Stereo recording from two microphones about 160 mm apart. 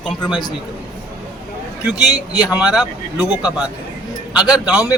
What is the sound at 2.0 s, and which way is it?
Speech, 25° left (ahead or behind).